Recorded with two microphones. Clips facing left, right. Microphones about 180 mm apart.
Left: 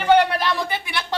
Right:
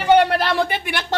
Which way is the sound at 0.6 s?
65° right (ahead or behind).